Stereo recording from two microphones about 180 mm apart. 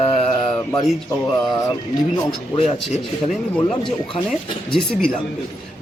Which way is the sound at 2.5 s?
35° left (ahead or behind).